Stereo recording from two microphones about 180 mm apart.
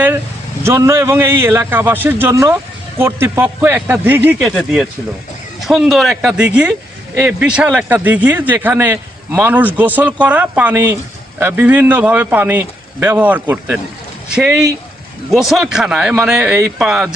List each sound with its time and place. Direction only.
0.6 s a man's voice: 15° right (ahead or behind)